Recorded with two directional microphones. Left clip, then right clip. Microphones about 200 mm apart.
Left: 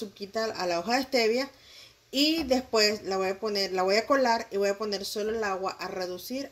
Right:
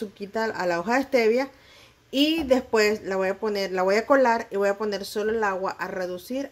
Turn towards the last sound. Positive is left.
turn(degrees=0)  # may be behind; listen again after turning